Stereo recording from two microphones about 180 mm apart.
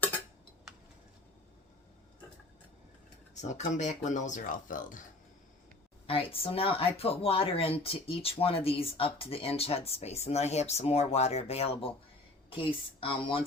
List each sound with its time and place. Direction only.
3.3 s speech: 40° left (ahead or behind)
6.1 s speech: 30° left (ahead or behind)